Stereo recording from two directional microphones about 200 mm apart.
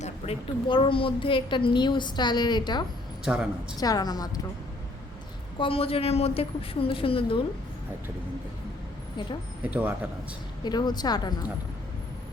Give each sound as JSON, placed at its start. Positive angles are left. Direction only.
{"t": 0.0, "sound": "a woman's voice", "side_deg": 30}
{"t": 3.2, "sound": "a woman's voice", "side_deg": -5}
{"t": 3.8, "sound": "a woman's voice", "side_deg": 20}
{"t": 5.5, "sound": "a woman's voice", "side_deg": 25}
{"t": 9.6, "sound": "speech", "side_deg": -5}
{"t": 10.6, "sound": "a woman's voice", "side_deg": 20}